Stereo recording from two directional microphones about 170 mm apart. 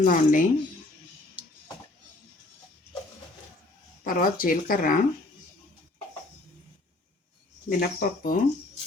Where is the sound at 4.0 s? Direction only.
55° left (ahead or behind).